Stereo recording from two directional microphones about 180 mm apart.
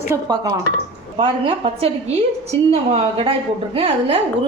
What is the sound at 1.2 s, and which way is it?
A woman's voice, 30° right (ahead or behind).